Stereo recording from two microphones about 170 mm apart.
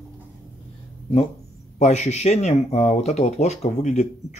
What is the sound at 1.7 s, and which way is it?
Speech, 45° left (ahead or behind).